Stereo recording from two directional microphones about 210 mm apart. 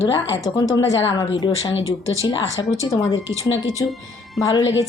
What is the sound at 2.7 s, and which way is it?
Speech, 15° left (ahead or behind).